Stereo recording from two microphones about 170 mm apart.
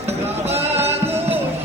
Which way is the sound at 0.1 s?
40° right (ahead or behind).